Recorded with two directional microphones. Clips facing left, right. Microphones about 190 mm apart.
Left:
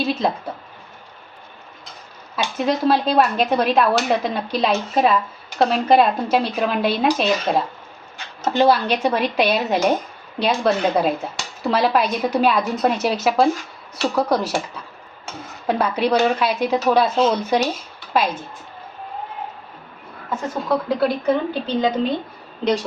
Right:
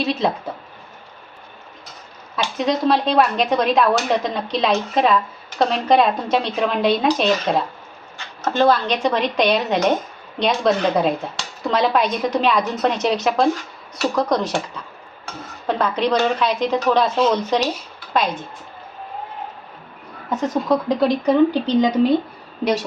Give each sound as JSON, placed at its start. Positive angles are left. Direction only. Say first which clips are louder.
{"t": 0.0, "sound": "speech", "louder": "even", "side_deg": 0}
{"t": 2.6, "sound": "speech", "louder": "even", "side_deg": 5}
{"t": 8.5, "sound": "speech", "louder": "even", "side_deg": 10}
{"t": 15.6, "sound": "speech", "louder": "even", "side_deg": 10}
{"t": 20.3, "sound": "a woman's voice", "louder": "right 3 dB", "side_deg": -20}